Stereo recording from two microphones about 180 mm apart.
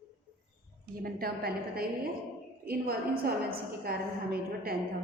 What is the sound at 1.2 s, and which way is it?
A woman's voice, 60° right (ahead or behind).